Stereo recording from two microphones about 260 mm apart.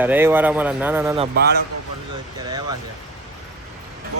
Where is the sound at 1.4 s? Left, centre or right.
Right.